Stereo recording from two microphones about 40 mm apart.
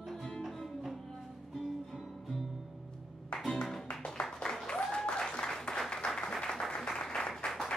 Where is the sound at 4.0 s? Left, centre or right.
Left.